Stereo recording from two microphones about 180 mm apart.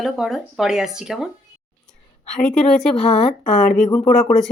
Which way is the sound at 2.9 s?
35° left (ahead or behind).